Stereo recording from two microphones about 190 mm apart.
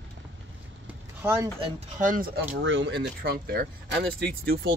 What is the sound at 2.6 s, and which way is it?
Speech, 70° right (ahead or behind).